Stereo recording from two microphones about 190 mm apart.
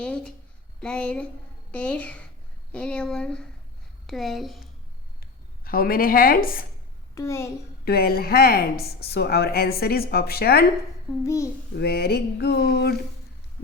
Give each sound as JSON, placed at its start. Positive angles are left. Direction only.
{"t": 0.0, "sound": "a woman's voice", "side_deg": 5}
{"t": 5.2, "sound": "a sound", "side_deg": 50}
{"t": 7.2, "sound": "speech", "side_deg": 15}
{"t": 7.9, "sound": "a woman's voice", "side_deg": 55}
{"t": 11.2, "sound": "speech", "side_deg": 15}
{"t": 11.8, "sound": "a woman's voice", "side_deg": 55}